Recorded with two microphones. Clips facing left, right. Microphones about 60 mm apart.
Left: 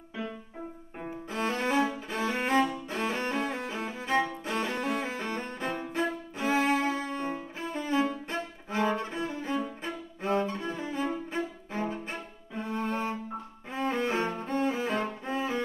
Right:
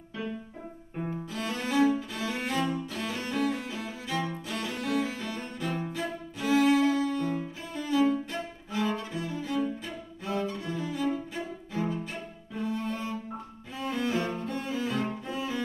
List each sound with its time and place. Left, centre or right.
1.3 s cello: left